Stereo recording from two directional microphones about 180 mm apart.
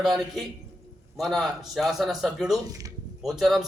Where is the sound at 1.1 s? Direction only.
Centre (ahead or behind).